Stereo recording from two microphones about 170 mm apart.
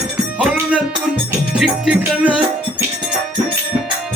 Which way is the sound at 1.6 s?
5° right (ahead or behind).